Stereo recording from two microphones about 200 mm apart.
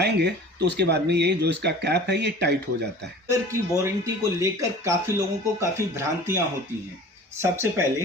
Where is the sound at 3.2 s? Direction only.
15° right (ahead or behind).